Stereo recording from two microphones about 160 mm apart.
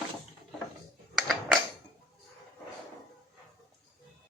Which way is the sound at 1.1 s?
Centre (ahead or behind).